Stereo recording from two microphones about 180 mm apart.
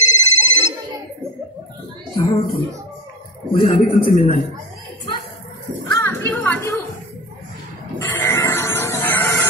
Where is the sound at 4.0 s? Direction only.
50° left (ahead or behind).